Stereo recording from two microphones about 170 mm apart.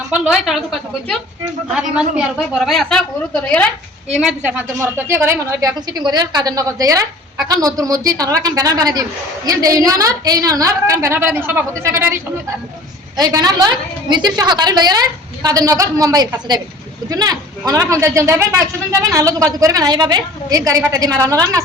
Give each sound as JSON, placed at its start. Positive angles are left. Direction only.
{"t": 0.1, "sound": "a woman's voice", "side_deg": 0}
{"t": 4.1, "sound": "a woman's voice", "side_deg": -5}